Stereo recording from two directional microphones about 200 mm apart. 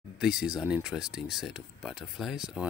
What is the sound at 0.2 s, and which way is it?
Speech, 5° right (ahead or behind).